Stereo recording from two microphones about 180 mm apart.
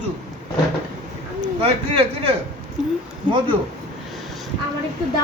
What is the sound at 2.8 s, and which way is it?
Speech, centre (ahead or behind).